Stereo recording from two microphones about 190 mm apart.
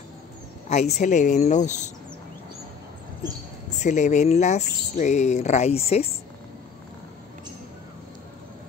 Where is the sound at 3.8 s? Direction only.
40° left (ahead or behind).